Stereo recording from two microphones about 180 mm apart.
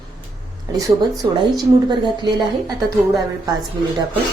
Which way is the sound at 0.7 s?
20° right (ahead or behind).